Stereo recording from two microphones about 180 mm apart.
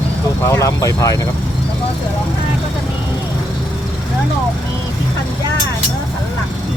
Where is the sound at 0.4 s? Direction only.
15° left (ahead or behind).